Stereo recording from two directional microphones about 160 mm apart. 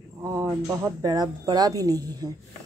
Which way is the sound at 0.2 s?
20° right (ahead or behind).